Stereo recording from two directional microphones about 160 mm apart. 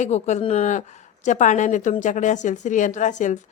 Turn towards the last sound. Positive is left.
turn(degrees=50)  # may be behind; listen again after turning